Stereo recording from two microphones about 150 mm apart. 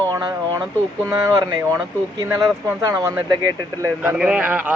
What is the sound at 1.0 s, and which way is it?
Speech, 25° right (ahead or behind).